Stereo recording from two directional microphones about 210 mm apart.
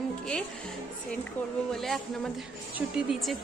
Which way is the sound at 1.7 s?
Centre (ahead or behind).